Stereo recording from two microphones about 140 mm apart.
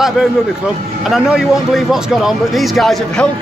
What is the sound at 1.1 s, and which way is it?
Speech, 5° right (ahead or behind).